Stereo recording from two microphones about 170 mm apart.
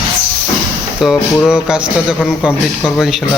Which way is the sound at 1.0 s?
Centre (ahead or behind).